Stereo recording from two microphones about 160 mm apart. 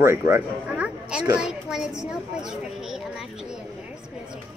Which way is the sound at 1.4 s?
5° right (ahead or behind).